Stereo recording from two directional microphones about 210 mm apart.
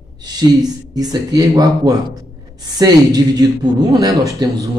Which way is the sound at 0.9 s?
20° right (ahead or behind).